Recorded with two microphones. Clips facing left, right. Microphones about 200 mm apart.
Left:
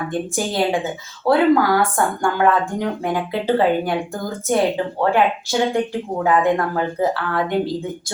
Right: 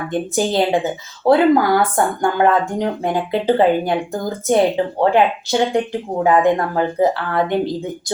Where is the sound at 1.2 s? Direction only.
50° right (ahead or behind).